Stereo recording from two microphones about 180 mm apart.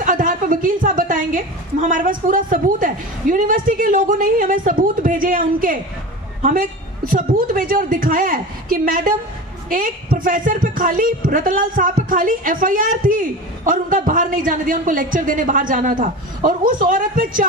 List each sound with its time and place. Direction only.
0.0 s a woman's voice: 50° right (ahead or behind)